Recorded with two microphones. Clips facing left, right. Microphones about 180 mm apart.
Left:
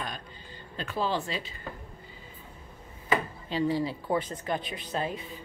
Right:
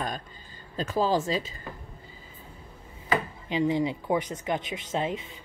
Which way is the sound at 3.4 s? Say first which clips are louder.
Right 3 dB; 20° right (ahead or behind).